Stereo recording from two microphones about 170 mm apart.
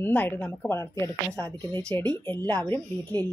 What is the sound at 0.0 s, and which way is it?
Speech, 10° left (ahead or behind).